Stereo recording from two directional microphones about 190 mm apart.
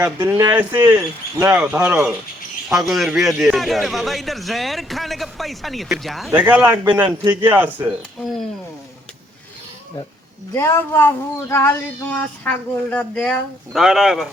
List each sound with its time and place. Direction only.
0.2 s a man's voice: 20° right (ahead or behind)
10.5 s speech: 15° left (ahead or behind)